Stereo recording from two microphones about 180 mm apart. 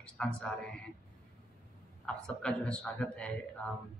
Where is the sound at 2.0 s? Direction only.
5° left (ahead or behind).